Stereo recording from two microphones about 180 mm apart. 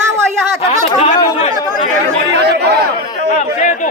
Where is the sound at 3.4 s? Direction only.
40° left (ahead or behind).